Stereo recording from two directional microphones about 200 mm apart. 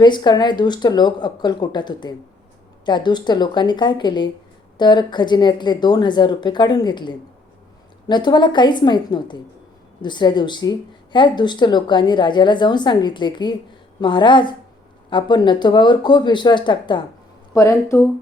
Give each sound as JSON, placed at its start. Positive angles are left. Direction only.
{"t": 0.0, "sound": "speech", "side_deg": 20}